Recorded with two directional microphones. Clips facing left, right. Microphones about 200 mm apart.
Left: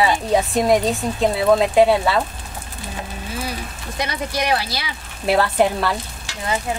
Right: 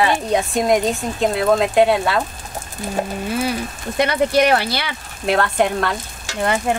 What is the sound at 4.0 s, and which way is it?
Speech, 60° right (ahead or behind).